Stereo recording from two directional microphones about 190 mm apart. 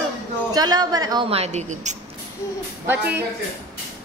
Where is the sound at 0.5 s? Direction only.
20° right (ahead or behind); by 1.9 s 40° right (ahead or behind).